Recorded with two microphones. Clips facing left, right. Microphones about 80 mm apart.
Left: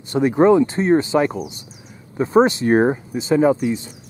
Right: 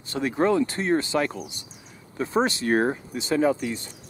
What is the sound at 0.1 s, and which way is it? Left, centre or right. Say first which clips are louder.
Speech: left 9 dB; centre.